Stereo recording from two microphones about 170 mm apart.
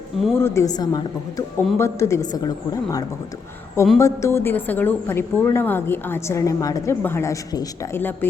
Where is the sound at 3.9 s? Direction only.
15° left (ahead or behind).